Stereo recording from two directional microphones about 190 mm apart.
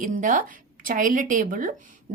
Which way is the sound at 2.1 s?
40° right (ahead or behind).